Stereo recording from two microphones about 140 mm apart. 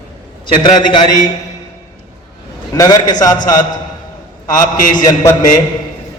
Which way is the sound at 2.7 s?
25° left (ahead or behind).